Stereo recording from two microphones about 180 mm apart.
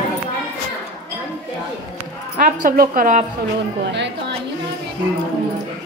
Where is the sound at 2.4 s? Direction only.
50° right (ahead or behind).